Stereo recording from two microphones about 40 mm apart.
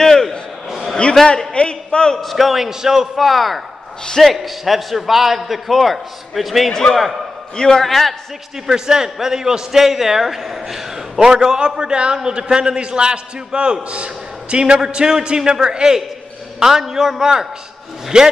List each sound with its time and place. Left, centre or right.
0.0 s a sound: centre
0.7 s a sound: centre
1.2 s a man's voice: centre
1.5 s speech: left
2.1 s a man's voice: centre
3.2 s a man's voice: centre
6.7 s a man's voice: centre
7.8 s a man's voice: centre
8.6 s a man's voice: centre
11.1 s a man's voice: centre